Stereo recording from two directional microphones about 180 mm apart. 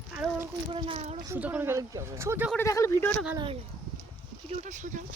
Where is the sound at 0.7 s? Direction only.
30° right (ahead or behind).